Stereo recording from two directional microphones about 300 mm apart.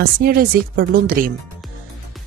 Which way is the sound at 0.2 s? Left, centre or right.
Right.